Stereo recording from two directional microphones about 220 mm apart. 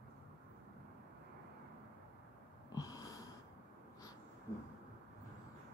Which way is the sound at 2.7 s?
15° left (ahead or behind).